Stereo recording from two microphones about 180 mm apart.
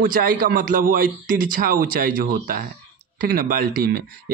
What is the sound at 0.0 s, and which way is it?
Speech, 50° right (ahead or behind).